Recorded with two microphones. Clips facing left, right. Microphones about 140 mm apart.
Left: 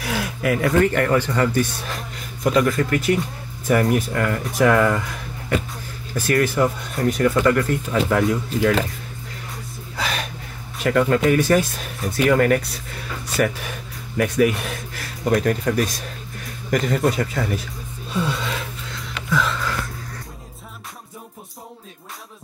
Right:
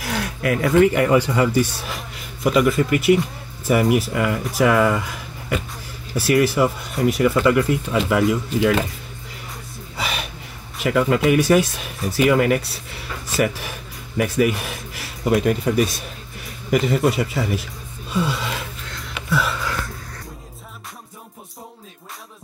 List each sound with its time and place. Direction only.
0.0 s speech: centre (ahead or behind)
9.9 s a sound: 5° right (ahead or behind)
10.8 s speech: 5° right (ahead or behind)
18.1 s gasp: centre (ahead or behind)